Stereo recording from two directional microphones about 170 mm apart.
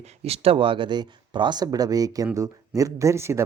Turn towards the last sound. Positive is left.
turn(degrees=-15)  # may be behind; listen again after turning